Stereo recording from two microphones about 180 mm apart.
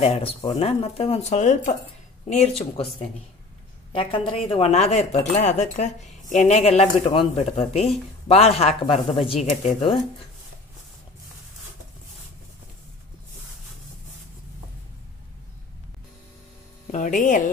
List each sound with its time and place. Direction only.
0.0 s speech: 35° left (ahead or behind)
16.9 s speech: 45° left (ahead or behind)